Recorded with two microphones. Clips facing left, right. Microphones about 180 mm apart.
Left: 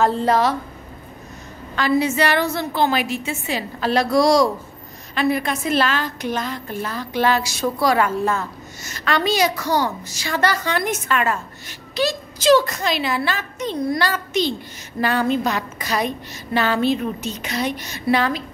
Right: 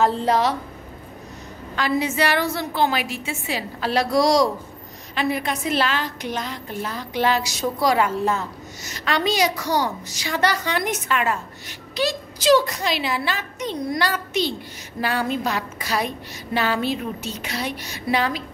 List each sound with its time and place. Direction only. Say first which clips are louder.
0.2 s a woman's voice: left 2 dB; 15° right (ahead or behind)
1.8 s a woman's voice: left 3 dB; 15° right (ahead or behind)